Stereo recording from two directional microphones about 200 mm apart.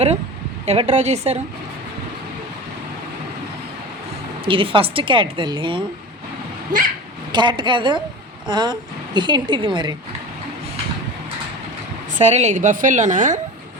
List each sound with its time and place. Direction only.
0.6 s a woman's voice: 35° right (ahead or behind)
4.4 s a woman's voice: 25° right (ahead or behind)
7.3 s a woman's voice: 25° right (ahead or behind)
12.1 s a woman's voice: 35° right (ahead or behind)